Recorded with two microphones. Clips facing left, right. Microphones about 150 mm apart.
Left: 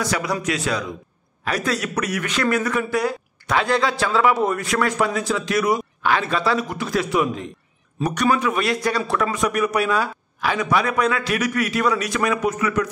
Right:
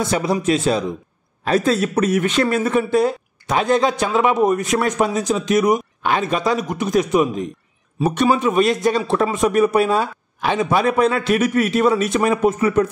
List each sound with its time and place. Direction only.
0.0 s speech: 25° right (ahead or behind)